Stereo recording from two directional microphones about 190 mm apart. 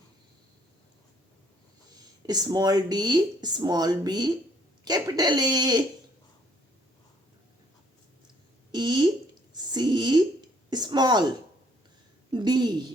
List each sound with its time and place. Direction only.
2.0 s speech: 20° right (ahead or behind)
8.7 s speech: 25° right (ahead or behind)
12.3 s speech: 25° right (ahead or behind)